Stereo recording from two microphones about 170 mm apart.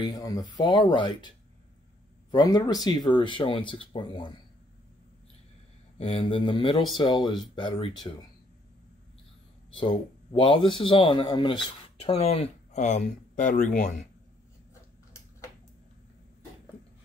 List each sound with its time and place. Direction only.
0.0 s speech: 20° left (ahead or behind)
2.3 s speech: 20° left (ahead or behind)
5.9 s speech: 30° left (ahead or behind)
9.8 s speech: 30° left (ahead or behind); by 14.0 s 50° left (ahead or behind)